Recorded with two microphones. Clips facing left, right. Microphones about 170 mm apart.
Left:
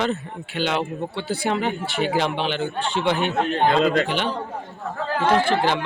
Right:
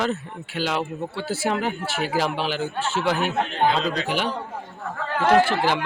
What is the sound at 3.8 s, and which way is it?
Speech, 55° left (ahead or behind).